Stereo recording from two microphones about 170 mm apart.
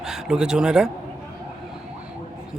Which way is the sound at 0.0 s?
5° right (ahead or behind).